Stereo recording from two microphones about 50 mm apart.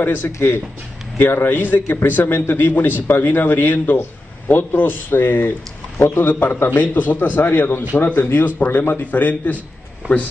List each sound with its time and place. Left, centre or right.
0.0 s a man's voice: left
7.3 s a man's voice: left
8.6 s a man's voice: left
9.0 s a man's voice: left
10.0 s speech: right